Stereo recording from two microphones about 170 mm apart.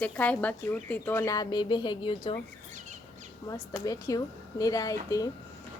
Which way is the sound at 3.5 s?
20° left (ahead or behind).